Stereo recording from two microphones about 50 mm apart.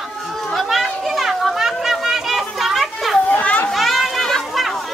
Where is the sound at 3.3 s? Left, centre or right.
Left.